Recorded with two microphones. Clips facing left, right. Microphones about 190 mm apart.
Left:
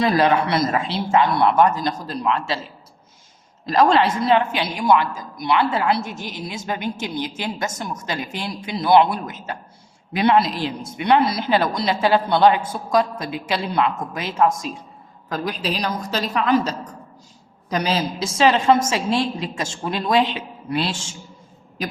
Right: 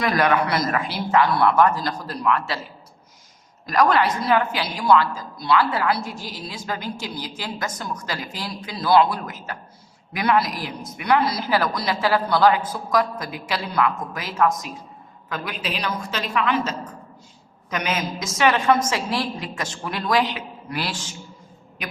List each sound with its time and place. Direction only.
0.0 s a woman's voice: 25° left (ahead or behind)
3.7 s a woman's voice: 25° left (ahead or behind)
15.3 s a woman's voice: 35° left (ahead or behind)